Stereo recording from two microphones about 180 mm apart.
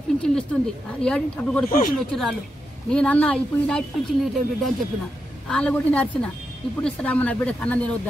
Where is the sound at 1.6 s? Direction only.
55° left (ahead or behind).